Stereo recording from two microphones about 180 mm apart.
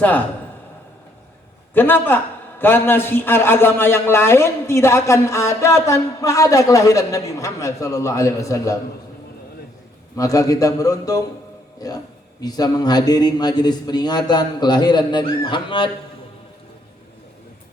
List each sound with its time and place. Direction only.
1.7 s a man's voice: 10° left (ahead or behind)
10.2 s a man's voice: 20° left (ahead or behind)
12.4 s a man's voice: 20° left (ahead or behind)